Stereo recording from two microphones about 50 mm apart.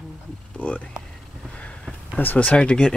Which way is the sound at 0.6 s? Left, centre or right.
Left.